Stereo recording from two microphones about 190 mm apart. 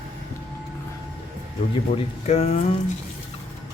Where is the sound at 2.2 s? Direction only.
35° left (ahead or behind).